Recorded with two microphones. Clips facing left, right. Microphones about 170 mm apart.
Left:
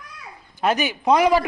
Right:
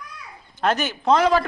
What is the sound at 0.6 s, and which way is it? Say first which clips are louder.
Speech: left 1 dB; 10° left (ahead or behind).